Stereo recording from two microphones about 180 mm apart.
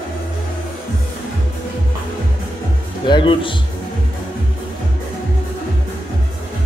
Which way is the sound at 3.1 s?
25° left (ahead or behind).